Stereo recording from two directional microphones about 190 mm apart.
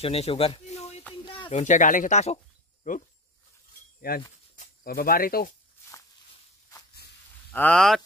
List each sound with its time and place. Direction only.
0.0 s speech: 30° left (ahead or behind)
4.6 s speech: 50° left (ahead or behind)
7.5 s speech: 5° left (ahead or behind)